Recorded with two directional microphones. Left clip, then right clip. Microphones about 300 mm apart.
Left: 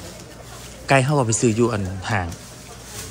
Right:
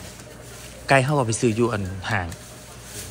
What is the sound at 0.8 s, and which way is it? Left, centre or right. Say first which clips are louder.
Speech: left 1 dB; centre.